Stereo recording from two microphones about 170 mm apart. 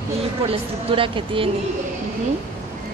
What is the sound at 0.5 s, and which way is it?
A woman's voice, 35° right (ahead or behind).